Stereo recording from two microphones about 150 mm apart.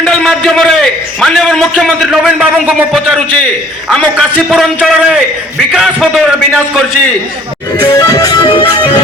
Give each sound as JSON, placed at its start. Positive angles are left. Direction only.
{"t": 0.0, "sound": "a man's voice", "side_deg": 5}
{"t": 7.8, "sound": "music", "side_deg": 25}